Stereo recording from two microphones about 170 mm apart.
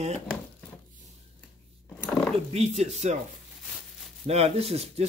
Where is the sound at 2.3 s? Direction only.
40° right (ahead or behind).